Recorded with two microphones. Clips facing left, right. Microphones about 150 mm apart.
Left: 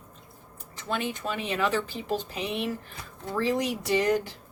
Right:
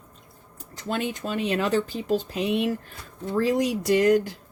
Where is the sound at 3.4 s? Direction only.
45° right (ahead or behind).